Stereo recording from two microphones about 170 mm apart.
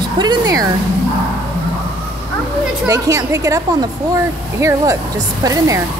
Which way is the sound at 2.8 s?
20° right (ahead or behind).